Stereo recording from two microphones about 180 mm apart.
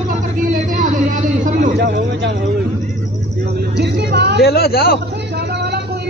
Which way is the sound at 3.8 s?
70° right (ahead or behind).